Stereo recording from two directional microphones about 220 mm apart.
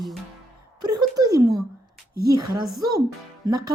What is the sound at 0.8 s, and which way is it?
Speech, 15° right (ahead or behind).